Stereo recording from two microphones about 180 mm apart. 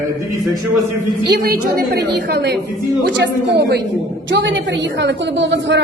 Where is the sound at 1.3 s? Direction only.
55° right (ahead or behind).